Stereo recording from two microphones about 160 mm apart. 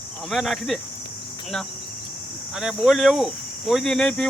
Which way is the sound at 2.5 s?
Centre (ahead or behind).